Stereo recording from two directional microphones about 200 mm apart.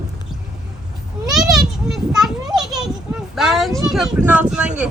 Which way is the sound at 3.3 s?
Centre (ahead or behind).